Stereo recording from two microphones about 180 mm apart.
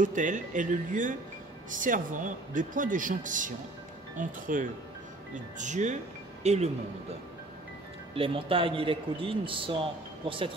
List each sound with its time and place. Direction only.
0.0 s speech: 45° right (ahead or behind)
8.1 s speech: 30° right (ahead or behind)